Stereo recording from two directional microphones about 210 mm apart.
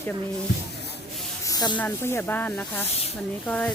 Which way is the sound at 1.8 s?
10° left (ahead or behind).